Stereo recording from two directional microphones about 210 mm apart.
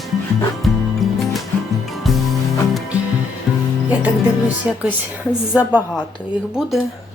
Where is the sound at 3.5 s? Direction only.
Centre (ahead or behind).